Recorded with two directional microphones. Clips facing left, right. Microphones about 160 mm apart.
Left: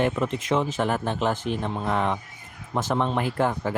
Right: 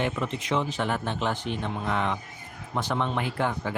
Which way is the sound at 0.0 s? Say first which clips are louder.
Left 4 dB; 45° left (ahead or behind).